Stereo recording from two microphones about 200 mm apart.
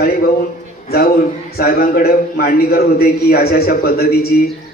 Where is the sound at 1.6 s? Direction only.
50° left (ahead or behind).